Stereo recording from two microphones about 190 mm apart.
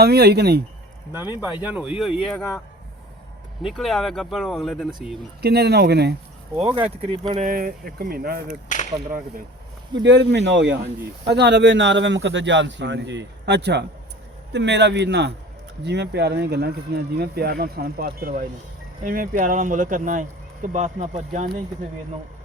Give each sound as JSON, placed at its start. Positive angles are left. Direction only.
{"t": 0.0, "sound": "speech", "side_deg": -55}
{"t": 1.1, "sound": "speech", "side_deg": -10}
{"t": 3.6, "sound": "speech", "side_deg": 0}
{"t": 5.4, "sound": "speech", "side_deg": -60}
{"t": 6.7, "sound": "speech", "side_deg": -30}
{"t": 7.4, "sound": "speech", "side_deg": -50}
{"t": 9.9, "sound": "speech", "side_deg": -65}